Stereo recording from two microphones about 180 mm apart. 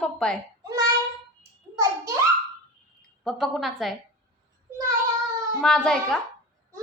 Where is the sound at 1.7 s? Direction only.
20° right (ahead or behind).